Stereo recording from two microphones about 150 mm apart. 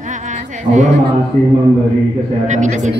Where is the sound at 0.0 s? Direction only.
55° right (ahead or behind).